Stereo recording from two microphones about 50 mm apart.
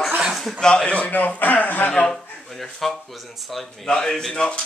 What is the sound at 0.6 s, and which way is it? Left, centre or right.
A man's voice, left.